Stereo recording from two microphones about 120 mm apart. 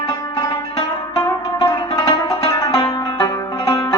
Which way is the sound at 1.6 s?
30° left (ahead or behind).